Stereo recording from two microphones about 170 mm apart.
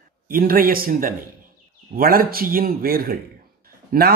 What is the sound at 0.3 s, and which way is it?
A man's voice, 55° right (ahead or behind).